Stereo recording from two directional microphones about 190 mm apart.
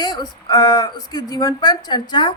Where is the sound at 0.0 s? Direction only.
20° left (ahead or behind).